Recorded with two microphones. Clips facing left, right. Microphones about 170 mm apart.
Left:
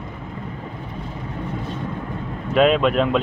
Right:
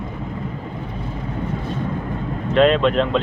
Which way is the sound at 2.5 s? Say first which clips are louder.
Right 1 dB; 5° left (ahead or behind).